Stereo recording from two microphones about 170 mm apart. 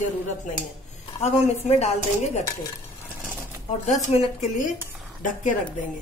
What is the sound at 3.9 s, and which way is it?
Speech, 40° left (ahead or behind).